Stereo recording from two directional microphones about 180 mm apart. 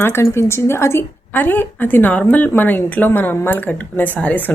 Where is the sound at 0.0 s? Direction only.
15° left (ahead or behind).